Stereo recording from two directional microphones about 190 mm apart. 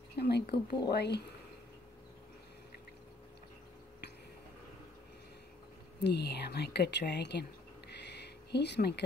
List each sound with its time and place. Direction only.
0.2 s speech: 60° left (ahead or behind)
5.9 s speech: 60° left (ahead or behind)
7.9 s a sound: 60° left (ahead or behind)